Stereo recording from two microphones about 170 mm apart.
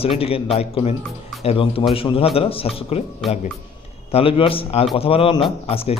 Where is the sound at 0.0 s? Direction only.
35° left (ahead or behind).